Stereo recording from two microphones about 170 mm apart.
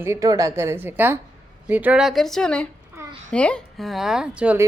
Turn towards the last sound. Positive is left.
turn(degrees=-10)  # may be behind; listen again after turning